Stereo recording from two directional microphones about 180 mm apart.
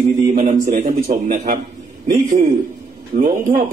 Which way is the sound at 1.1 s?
45° right (ahead or behind).